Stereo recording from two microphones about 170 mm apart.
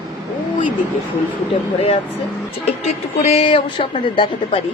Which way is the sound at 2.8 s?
40° left (ahead or behind).